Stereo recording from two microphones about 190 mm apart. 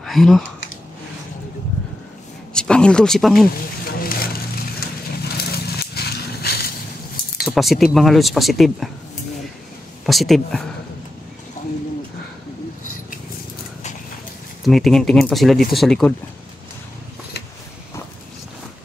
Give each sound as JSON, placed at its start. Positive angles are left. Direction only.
{"t": 0.0, "sound": "speech", "side_deg": 0}
{"t": 2.5, "sound": "speech", "side_deg": 5}
{"t": 4.0, "sound": "vehicle", "side_deg": 50}
{"t": 5.4, "sound": "a sound", "side_deg": 55}
{"t": 7.4, "sound": "speech", "side_deg": 0}
{"t": 10.0, "sound": "speech", "side_deg": 0}
{"t": 11.6, "sound": "bird", "side_deg": 40}
{"t": 14.6, "sound": "speech", "side_deg": 0}